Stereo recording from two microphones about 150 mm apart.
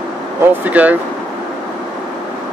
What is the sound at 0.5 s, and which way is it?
Speech, 10° right (ahead or behind).